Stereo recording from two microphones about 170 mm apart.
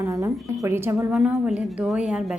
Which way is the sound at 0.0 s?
20° right (ahead or behind).